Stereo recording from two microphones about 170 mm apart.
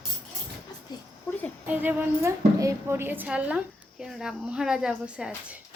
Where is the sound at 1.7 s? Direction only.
10° right (ahead or behind).